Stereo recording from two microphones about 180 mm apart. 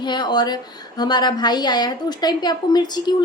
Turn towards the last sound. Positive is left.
turn(degrees=25)  # may be behind; listen again after turning